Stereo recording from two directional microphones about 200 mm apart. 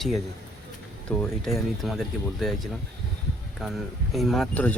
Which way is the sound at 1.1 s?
Centre (ahead or behind).